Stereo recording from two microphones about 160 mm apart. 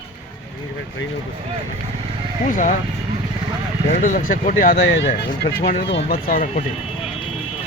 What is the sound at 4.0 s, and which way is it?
Speech, 55° left (ahead or behind).